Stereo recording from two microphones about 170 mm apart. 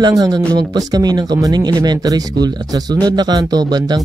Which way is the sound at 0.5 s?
20° right (ahead or behind).